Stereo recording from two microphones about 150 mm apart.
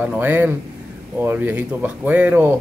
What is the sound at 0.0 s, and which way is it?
A man's voice, 10° right (ahead or behind).